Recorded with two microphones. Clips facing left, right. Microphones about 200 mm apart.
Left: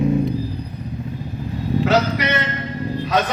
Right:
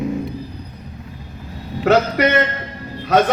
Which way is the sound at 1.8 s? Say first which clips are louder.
Right 5 dB; 50° right (ahead or behind).